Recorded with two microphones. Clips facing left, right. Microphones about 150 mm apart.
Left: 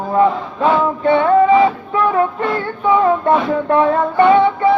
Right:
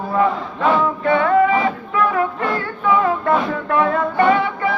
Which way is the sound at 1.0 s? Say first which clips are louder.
Left 4 dB; 25° left (ahead or behind).